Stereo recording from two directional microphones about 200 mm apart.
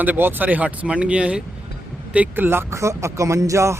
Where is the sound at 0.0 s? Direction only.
10° right (ahead or behind).